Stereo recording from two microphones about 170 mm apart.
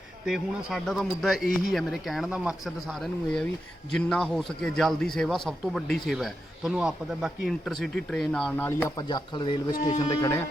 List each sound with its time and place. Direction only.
0.3 s a man's voice: centre (ahead or behind)
9.0 s speech: 25° left (ahead or behind)